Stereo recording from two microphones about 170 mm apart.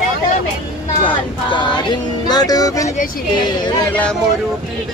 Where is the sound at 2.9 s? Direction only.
55° left (ahead or behind).